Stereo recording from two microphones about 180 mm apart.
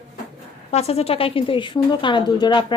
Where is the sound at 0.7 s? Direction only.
35° left (ahead or behind).